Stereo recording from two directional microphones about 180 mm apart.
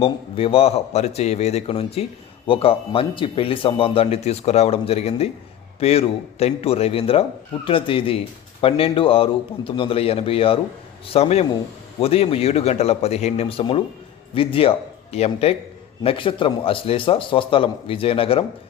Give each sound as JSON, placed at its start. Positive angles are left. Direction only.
{"t": 0.0, "sound": "a man's voice", "side_deg": 30}